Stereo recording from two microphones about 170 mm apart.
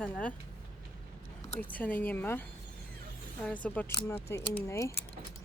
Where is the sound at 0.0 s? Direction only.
10° left (ahead or behind).